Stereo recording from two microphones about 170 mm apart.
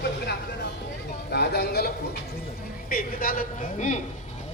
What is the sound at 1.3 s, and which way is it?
Speech, 70° left (ahead or behind).